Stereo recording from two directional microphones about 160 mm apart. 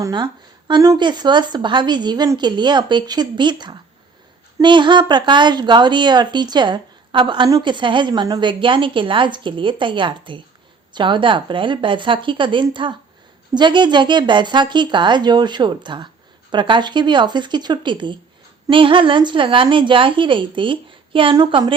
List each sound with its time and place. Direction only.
0.0 s a woman's voice: 30° right (ahead or behind)